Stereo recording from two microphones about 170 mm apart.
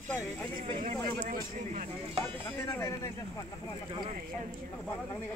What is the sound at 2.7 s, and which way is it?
Speech, 15° left (ahead or behind).